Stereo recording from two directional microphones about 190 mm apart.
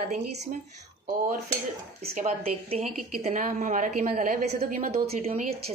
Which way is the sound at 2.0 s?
35° right (ahead or behind).